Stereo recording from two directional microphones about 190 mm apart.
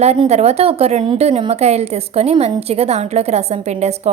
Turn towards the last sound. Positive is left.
turn(degrees=-35)  # may be behind; listen again after turning